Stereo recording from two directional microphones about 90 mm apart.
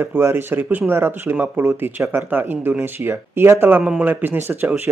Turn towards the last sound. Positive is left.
turn(degrees=-20)  # may be behind; listen again after turning